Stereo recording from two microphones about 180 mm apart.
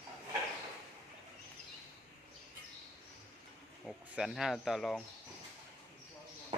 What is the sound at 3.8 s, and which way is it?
Speech, centre (ahead or behind).